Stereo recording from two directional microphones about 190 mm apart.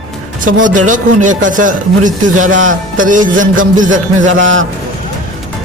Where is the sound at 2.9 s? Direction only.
45° right (ahead or behind).